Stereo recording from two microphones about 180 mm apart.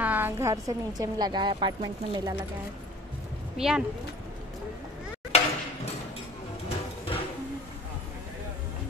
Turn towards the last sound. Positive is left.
turn(degrees=30)  # may be behind; listen again after turning